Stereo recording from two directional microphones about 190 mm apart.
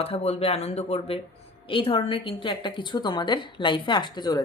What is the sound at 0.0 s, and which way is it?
Speech, 30° left (ahead or behind).